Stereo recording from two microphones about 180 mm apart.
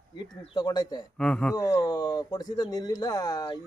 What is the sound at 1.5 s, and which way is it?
Speech, 20° left (ahead or behind).